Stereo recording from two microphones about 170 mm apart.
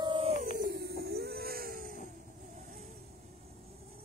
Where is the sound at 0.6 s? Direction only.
65° right (ahead or behind).